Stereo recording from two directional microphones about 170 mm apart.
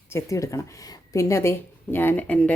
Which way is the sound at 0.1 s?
15° left (ahead or behind).